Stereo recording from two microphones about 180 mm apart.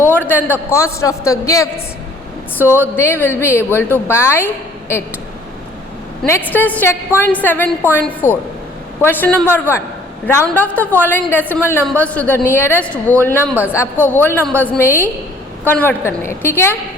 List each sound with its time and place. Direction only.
0.1 s a man's voice: 10° left (ahead or behind)
2.9 s a woman's voice: 10° left (ahead or behind)
6.2 s a woman's voice: 10° left (ahead or behind)
13.5 s a man's voice: 10° right (ahead or behind)
13.7 s a woman's voice: 10° left (ahead or behind)